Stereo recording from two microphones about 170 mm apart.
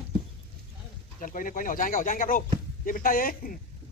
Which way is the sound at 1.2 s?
50° left (ahead or behind).